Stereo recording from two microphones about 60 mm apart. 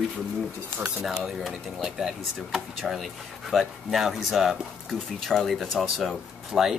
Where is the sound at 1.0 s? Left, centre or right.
Centre.